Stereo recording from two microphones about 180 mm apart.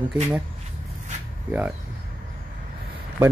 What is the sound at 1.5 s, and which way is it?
Speech, 10° right (ahead or behind).